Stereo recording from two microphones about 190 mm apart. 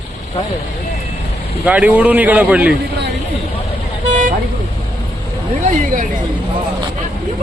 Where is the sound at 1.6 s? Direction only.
10° right (ahead or behind).